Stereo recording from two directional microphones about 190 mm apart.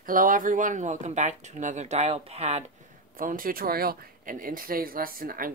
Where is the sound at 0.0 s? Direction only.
45° right (ahead or behind).